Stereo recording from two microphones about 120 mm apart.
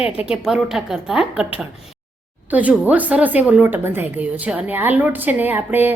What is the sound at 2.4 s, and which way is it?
A woman's voice, 15° right (ahead or behind).